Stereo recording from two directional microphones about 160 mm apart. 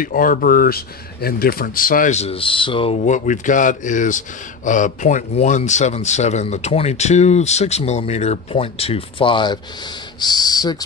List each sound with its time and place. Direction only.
0.0 s speech: 60° left (ahead or behind); by 3.0 s 35° left (ahead or behind)
3.0 s speech: 55° left (ahead or behind); by 10.8 s 25° left (ahead or behind)